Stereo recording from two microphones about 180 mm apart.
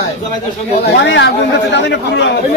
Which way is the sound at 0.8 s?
75° left (ahead or behind).